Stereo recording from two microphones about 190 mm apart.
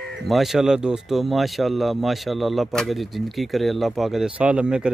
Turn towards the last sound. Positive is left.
turn(degrees=-5)  # may be behind; listen again after turning